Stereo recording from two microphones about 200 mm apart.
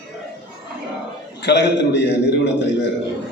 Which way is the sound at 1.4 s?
60° left (ahead or behind).